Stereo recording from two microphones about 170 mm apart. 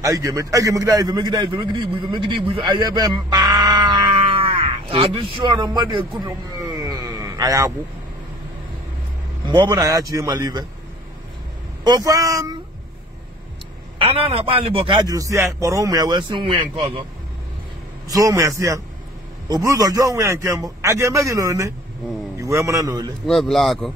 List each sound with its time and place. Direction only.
0.0 s a man's voice: 20° right (ahead or behind)
9.5 s a man's voice: 25° right (ahead or behind)
11.8 s a man's voice: 20° right (ahead or behind)
13.9 s a man's voice: 35° right (ahead or behind)
18.0 s a man's voice: 20° right (ahead or behind)
23.2 s speech: centre (ahead or behind)